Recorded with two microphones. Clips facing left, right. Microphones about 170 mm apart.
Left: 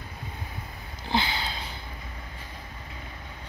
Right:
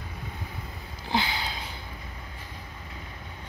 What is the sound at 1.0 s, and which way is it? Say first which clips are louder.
Sniff: left 1 dB; 10° right (ahead or behind).